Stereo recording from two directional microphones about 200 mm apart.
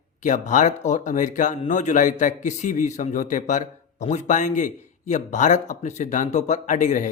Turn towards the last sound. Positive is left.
turn(degrees=40)  # may be behind; listen again after turning